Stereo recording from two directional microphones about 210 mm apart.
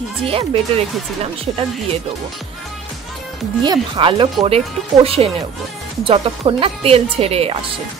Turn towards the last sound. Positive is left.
turn(degrees=-30)  # may be behind; listen again after turning